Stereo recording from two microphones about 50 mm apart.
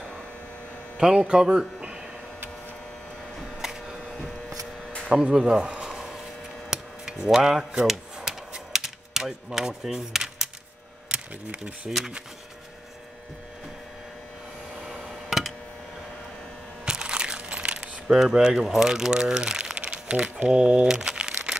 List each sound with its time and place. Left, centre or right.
0.9 s speech: centre
3.6 s a sound: centre
5.4 s a sound: centre
6.7 s cutlery: centre
11.1 s speech: centre
14.8 s tick-tock: centre
16.8 s crumpling: centre
20.4 s speech: centre
20.8 s crumpling: centre